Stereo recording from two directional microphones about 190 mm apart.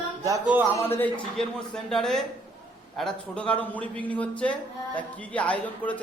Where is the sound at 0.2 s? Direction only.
15° right (ahead or behind).